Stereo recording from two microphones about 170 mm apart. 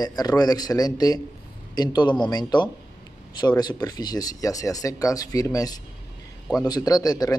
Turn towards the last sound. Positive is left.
turn(degrees=20)  # may be behind; listen again after turning